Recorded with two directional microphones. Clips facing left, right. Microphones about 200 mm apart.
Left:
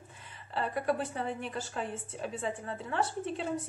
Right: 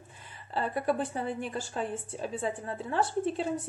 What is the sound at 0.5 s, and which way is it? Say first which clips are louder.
A woman's voice: right 2 dB; 35° right (ahead or behind).